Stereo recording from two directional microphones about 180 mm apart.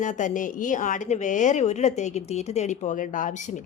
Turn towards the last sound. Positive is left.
turn(degrees=45)  # may be behind; listen again after turning